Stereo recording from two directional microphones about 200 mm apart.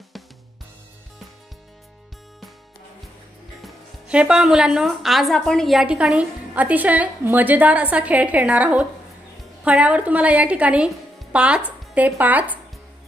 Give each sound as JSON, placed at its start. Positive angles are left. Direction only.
{"t": 3.6, "sound": "speech", "side_deg": -5}